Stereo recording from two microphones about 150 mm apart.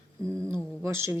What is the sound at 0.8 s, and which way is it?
Speech, 15° right (ahead or behind).